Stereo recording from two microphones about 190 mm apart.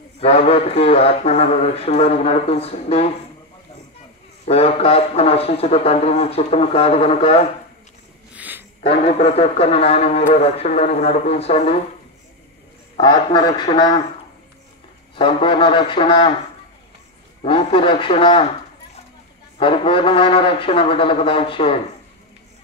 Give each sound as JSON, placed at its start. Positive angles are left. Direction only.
{"t": 0.2, "sound": "speech", "side_deg": 30}
{"t": 4.5, "sound": "speech", "side_deg": 30}
{"t": 8.4, "sound": "a sound", "side_deg": -10}
{"t": 8.8, "sound": "speech", "side_deg": 30}
{"t": 12.9, "sound": "speech", "side_deg": 25}
{"t": 15.1, "sound": "speech", "side_deg": 25}
{"t": 17.4, "sound": "speech", "side_deg": 30}
{"t": 19.6, "sound": "speech", "side_deg": 25}